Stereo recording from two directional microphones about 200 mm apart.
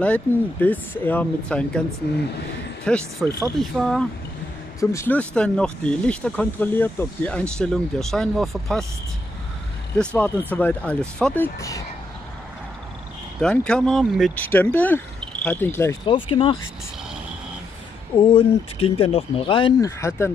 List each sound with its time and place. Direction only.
0.0 s speech: 5° left (ahead or behind)
2.8 s speech: 5° left (ahead or behind)
4.7 s speech: 10° left (ahead or behind)
9.9 s speech: 5° left (ahead or behind)
13.4 s speech: 5° left (ahead or behind)
16.1 s speech: 25° left (ahead or behind)
18.1 s speech: 25° left (ahead or behind)